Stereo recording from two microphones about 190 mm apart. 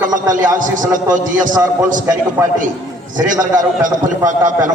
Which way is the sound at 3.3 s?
45° right (ahead or behind).